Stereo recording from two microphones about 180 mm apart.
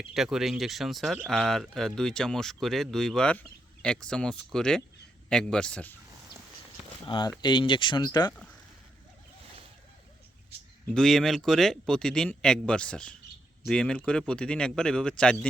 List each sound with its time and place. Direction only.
0.1 s speech: centre (ahead or behind)
7.1 s speech: 25° left (ahead or behind)
10.9 s speech: 5° left (ahead or behind)